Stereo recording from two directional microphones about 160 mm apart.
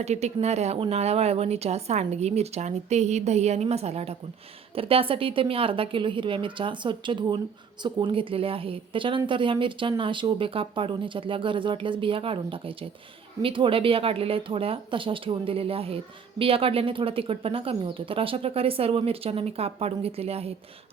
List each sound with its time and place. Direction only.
0.0 s a woman's voice: 45° right (ahead or behind)